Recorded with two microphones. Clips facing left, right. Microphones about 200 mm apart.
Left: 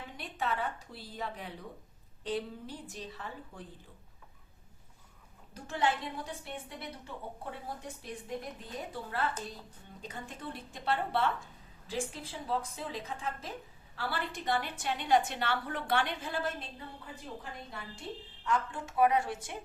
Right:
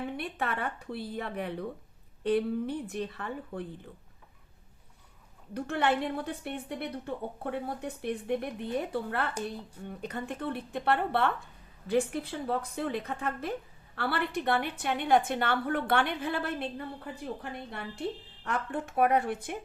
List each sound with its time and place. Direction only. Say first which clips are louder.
0.2 s a woman's voice: right 2 dB; 60° right (ahead or behind)
5.5 s a woman's voice: right 4 dB; 65° right (ahead or behind)